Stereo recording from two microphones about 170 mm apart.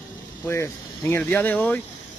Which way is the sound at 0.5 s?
15° left (ahead or behind).